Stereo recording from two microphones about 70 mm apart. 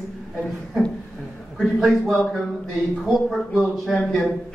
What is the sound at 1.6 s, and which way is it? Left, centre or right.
Speech, centre.